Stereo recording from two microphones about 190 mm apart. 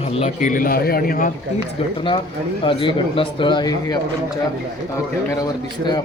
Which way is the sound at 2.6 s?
25° left (ahead or behind).